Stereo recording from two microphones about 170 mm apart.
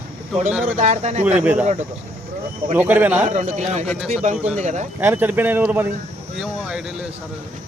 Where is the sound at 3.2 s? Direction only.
45° right (ahead or behind).